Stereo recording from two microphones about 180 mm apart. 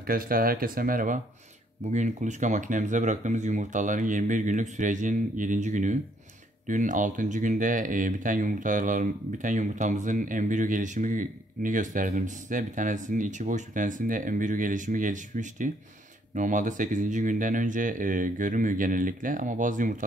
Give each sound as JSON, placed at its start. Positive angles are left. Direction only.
{"t": 0.0, "sound": "speech", "side_deg": -55}